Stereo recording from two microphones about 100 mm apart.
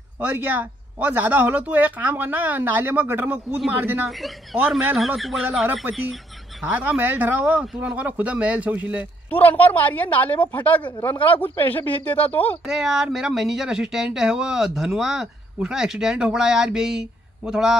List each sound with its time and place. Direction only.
0.2 s speech: 15° right (ahead or behind)
9.3 s speech: 15° left (ahead or behind)
12.6 s speech: 5° right (ahead or behind)